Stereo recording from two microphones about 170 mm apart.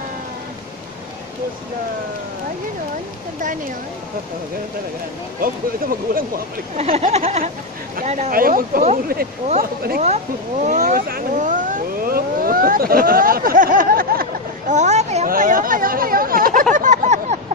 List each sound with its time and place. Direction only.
5.4 s speech: 60° right (ahead or behind)
6.8 s speech: 40° right (ahead or behind); by 14.2 s 55° right (ahead or behind)
14.7 s speech: 45° right (ahead or behind)
15.2 s speech: 55° right (ahead or behind)
16.7 s a sound: 45° right (ahead or behind)